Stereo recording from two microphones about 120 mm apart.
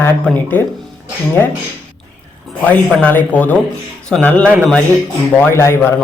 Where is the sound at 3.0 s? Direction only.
15° left (ahead or behind).